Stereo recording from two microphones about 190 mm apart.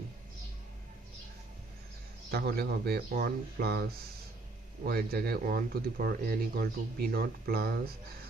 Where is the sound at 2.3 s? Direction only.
55° right (ahead or behind).